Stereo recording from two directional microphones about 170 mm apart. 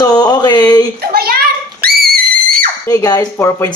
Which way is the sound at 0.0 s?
25° left (ahead or behind).